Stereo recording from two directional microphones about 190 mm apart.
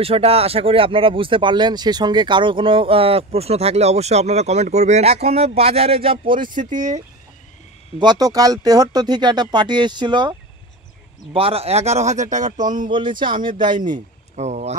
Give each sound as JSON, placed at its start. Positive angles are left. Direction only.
{"t": 0.0, "sound": "speech", "side_deg": -30}
{"t": 6.6, "sound": "speech", "side_deg": -40}
{"t": 8.0, "sound": "speech", "side_deg": -20}
{"t": 11.3, "sound": "speech", "side_deg": -30}
{"t": 12.9, "sound": "speech", "side_deg": -25}
{"t": 13.9, "sound": "speech", "side_deg": -35}